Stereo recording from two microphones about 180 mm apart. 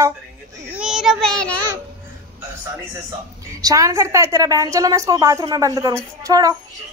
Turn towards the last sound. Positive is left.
turn(degrees=-20)  # may be behind; listen again after turning